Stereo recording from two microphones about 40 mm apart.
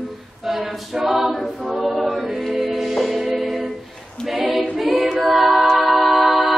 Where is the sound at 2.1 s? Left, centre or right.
Centre.